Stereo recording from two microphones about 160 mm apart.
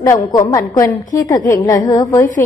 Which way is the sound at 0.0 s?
20° left (ahead or behind).